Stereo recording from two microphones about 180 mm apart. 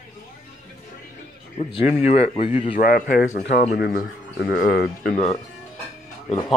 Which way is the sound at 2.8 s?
55° left (ahead or behind).